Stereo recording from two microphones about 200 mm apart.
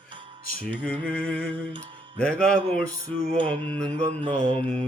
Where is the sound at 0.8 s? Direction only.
5° left (ahead or behind).